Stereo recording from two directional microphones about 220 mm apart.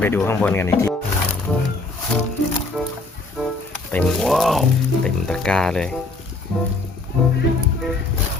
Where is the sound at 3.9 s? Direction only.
5° left (ahead or behind).